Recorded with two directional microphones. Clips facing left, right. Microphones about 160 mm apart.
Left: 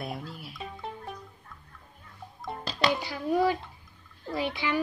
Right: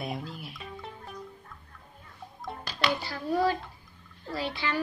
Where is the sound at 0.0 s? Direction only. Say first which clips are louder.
Right 1 dB; centre (ahead or behind).